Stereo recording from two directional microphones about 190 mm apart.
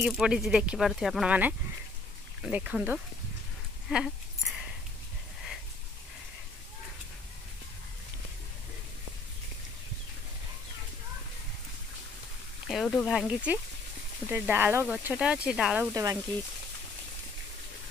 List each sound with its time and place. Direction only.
0.0 s speech: centre (ahead or behind)
2.5 s speech: 10° right (ahead or behind)
3.9 s a sound: 5° right (ahead or behind)
12.6 s speech: centre (ahead or behind)
15.9 s speech: 15° right (ahead or behind)